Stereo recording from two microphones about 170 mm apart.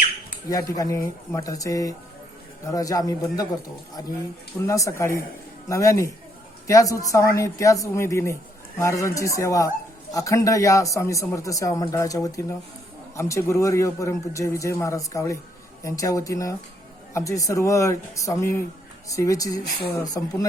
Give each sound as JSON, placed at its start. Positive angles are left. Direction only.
{"t": 0.8, "sound": "speech", "side_deg": 20}
{"t": 4.6, "sound": "speech", "side_deg": 20}